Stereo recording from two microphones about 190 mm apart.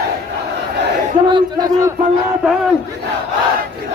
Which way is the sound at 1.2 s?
20° right (ahead or behind).